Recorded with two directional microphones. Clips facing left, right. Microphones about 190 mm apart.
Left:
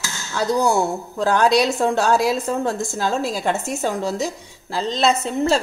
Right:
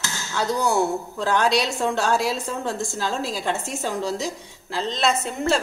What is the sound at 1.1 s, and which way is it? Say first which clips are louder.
A woman's voice: left 5 dB; 40° left (ahead or behind).